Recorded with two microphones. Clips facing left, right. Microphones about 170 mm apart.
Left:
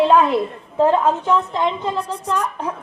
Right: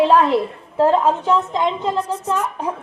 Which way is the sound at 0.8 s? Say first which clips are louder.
Even; 5° right (ahead or behind).